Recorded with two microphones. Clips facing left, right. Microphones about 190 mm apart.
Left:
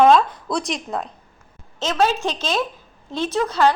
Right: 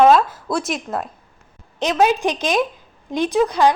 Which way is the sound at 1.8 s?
15° right (ahead or behind).